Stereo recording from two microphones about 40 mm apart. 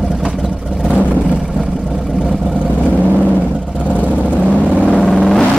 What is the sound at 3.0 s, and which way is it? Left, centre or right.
Vehicle, right.